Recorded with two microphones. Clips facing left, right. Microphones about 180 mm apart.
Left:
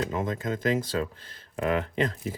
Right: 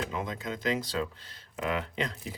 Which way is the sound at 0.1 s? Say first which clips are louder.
Left 5 dB; 50° left (ahead or behind).